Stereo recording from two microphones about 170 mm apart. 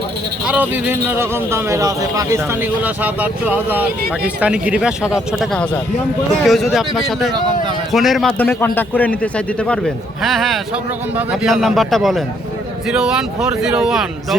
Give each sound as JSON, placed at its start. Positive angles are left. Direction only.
{"t": 0.4, "sound": "a man's voice", "side_deg": -10}